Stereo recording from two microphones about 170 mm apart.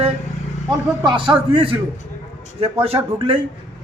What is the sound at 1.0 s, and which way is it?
A man's voice, 25° right (ahead or behind).